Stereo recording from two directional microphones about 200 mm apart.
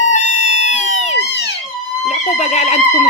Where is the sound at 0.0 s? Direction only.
35° left (ahead or behind).